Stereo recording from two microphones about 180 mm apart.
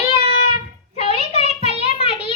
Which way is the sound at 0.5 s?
35° left (ahead or behind).